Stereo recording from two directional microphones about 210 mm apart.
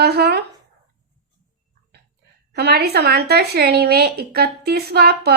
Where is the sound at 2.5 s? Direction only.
50° right (ahead or behind).